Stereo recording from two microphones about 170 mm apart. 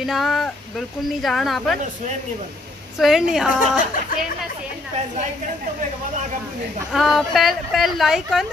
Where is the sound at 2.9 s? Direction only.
Centre (ahead or behind).